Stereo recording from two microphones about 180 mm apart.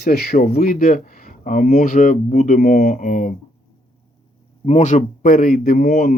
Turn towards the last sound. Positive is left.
turn(degrees=55)  # may be behind; listen again after turning